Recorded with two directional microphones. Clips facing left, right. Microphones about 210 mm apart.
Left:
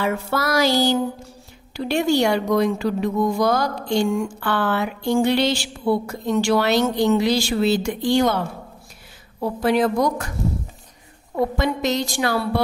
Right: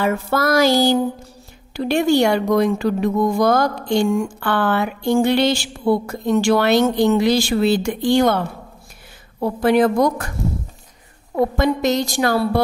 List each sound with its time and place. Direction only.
0.0 s a woman's voice: 50° right (ahead or behind)
9.4 s a woman's voice: 55° right (ahead or behind)
11.5 s a woman's voice: 50° right (ahead or behind)